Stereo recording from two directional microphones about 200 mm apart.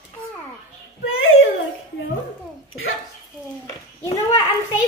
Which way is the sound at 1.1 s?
90° left.